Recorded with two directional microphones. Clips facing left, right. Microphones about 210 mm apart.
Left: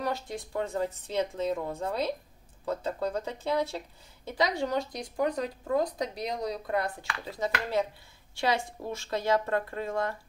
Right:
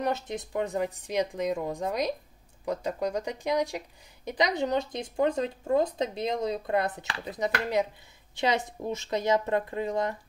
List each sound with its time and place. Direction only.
0.0 s a woman's voice: 20° right (ahead or behind)